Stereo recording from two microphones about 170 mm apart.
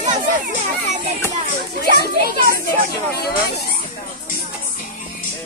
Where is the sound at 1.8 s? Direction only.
70° left (ahead or behind).